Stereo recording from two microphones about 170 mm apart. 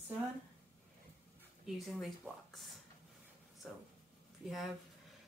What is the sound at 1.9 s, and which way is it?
Speech, centre (ahead or behind).